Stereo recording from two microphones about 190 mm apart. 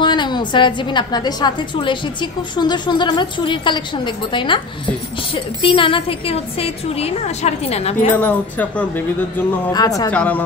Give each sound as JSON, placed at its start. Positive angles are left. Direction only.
{"t": 0.0, "sound": "a woman's voice", "side_deg": 25}
{"t": 8.2, "sound": "speech", "side_deg": 5}
{"t": 9.7, "sound": "a woman's voice", "side_deg": 20}
{"t": 10.1, "sound": "speech", "side_deg": 10}